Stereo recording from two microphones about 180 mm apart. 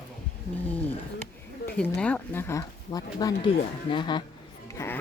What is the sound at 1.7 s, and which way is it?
Speech, 5° left (ahead or behind).